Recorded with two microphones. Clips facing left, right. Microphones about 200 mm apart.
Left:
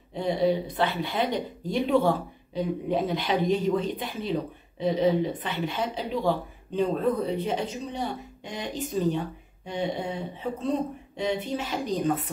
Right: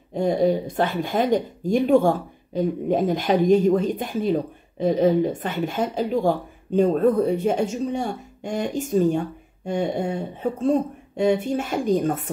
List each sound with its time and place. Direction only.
0.1 s a woman's voice: 45° right (ahead or behind)